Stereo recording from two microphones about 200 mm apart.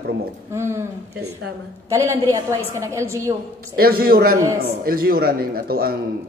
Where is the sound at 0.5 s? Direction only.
15° right (ahead or behind).